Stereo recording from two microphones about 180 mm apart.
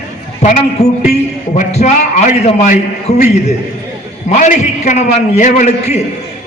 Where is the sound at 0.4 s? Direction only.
40° left (ahead or behind).